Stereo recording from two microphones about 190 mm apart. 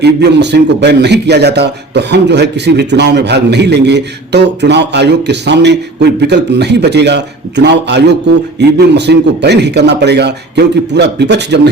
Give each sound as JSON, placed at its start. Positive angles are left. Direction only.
{"t": 0.0, "sound": "a man's voice", "side_deg": -65}